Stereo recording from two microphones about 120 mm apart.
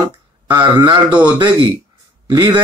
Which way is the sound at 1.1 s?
10° right (ahead or behind).